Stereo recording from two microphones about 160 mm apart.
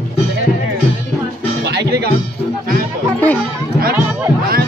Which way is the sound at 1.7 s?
90° right.